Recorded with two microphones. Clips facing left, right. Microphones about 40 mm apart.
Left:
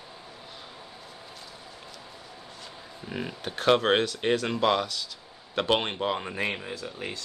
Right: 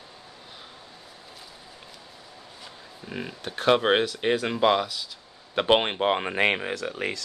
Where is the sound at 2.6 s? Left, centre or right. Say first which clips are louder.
Even; centre.